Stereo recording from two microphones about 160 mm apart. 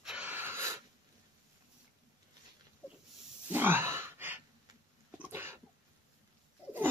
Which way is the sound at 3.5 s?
15° right (ahead or behind).